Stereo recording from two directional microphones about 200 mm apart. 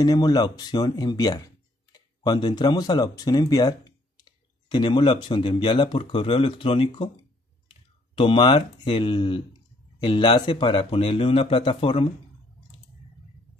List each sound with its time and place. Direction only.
0.0 s speech: 20° left (ahead or behind)
8.2 s speech: 25° left (ahead or behind)